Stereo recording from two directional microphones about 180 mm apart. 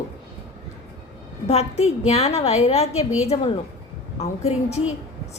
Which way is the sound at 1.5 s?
35° left (ahead or behind).